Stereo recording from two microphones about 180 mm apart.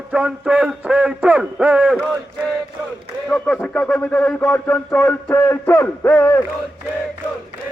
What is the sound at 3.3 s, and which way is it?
Speech, 5° left (ahead or behind).